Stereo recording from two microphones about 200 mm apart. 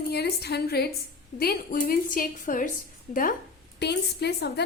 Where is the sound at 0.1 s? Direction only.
55° left (ahead or behind).